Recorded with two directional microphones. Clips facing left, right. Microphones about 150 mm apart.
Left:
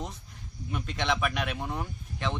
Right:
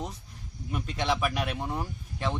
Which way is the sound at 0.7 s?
5° right (ahead or behind).